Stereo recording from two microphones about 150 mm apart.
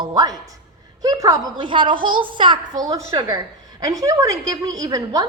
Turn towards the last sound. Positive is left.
turn(degrees=-25)  # may be behind; listen again after turning